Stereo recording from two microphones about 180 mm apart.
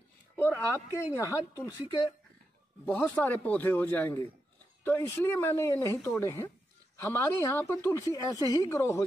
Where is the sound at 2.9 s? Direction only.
5° left (ahead or behind).